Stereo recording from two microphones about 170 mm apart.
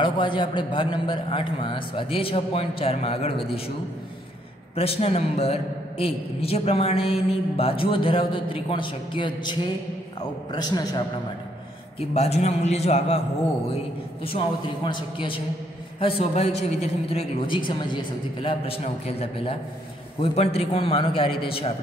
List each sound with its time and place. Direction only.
0.0 s a woman's voice: 30° left (ahead or behind)
4.7 s a woman's voice: 35° left (ahead or behind)
12.0 s a woman's voice: 40° left (ahead or behind)
14.2 s a man's voice: 30° left (ahead or behind)